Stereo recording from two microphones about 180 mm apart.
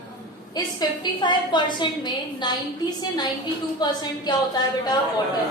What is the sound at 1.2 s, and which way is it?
A woman's voice, 25° left (ahead or behind).